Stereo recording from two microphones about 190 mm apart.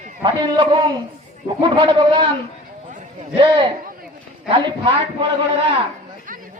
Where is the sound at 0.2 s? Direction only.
25° right (ahead or behind).